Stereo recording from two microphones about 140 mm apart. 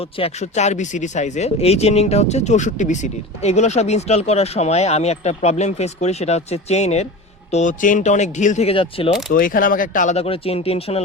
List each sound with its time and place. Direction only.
0.2 s speech: 55° left (ahead or behind)
7.5 s speech: 65° left (ahead or behind)
8.7 s speech: 40° left (ahead or behind)
9.3 s speech: 80° left
10.2 s speech: 40° left (ahead or behind)